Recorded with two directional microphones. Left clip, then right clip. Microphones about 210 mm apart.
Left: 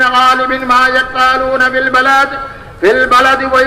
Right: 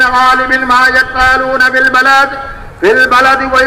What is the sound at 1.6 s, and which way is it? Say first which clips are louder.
A man's voice: right 3 dB; 30° left (ahead or behind).